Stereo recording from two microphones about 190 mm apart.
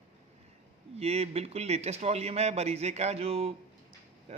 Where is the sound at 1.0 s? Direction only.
35° right (ahead or behind).